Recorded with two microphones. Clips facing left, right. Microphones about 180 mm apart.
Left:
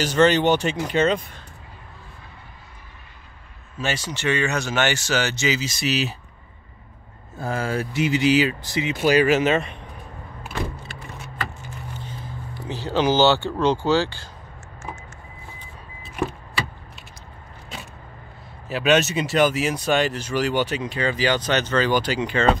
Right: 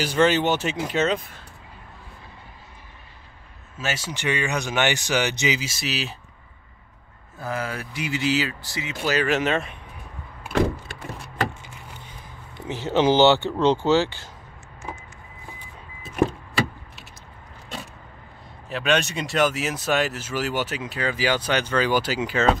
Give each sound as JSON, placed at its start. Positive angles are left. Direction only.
{"t": 0.0, "sound": "speech", "side_deg": -5}
{"t": 3.7, "sound": "speech", "side_deg": -5}
{"t": 7.3, "sound": "speech", "side_deg": 30}
{"t": 9.3, "sound": "speech", "side_deg": 0}
{"t": 11.6, "sound": "a sound", "side_deg": -15}
{"t": 13.8, "sound": "speech", "side_deg": -20}
{"t": 18.7, "sound": "speech", "side_deg": 5}